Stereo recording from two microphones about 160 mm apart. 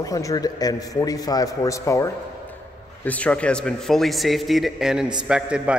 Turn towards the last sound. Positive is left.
turn(degrees=-5)  # may be behind; listen again after turning